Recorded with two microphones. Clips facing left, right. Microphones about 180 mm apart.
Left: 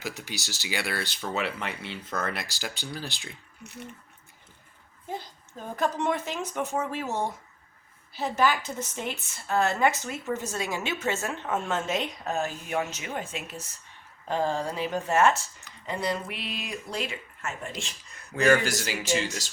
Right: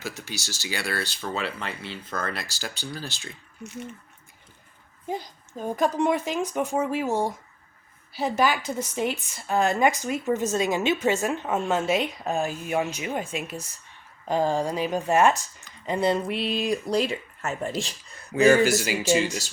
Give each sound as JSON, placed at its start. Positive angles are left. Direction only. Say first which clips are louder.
{"t": 0.0, "sound": "speech", "louder": "right 1 dB", "side_deg": 15}
{"t": 5.0, "sound": "a woman's voice", "louder": "right 5 dB", "side_deg": -15}
{"t": 18.3, "sound": "a woman's voice", "louder": "right 5 dB", "side_deg": -10}